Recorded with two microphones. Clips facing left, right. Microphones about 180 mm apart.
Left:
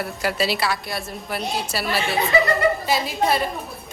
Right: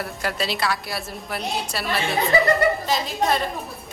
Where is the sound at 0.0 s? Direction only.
5° left (ahead or behind).